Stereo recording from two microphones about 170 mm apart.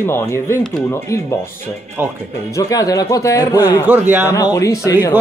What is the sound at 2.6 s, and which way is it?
Speech, 20° left (ahead or behind).